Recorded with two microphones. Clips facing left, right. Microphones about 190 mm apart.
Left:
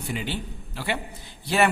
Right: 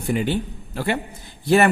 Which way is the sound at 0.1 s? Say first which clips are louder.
Right 10 dB; 50° right (ahead or behind).